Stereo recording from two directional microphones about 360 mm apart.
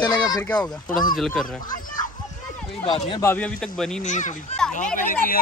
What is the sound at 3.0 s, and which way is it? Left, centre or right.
Speech, centre.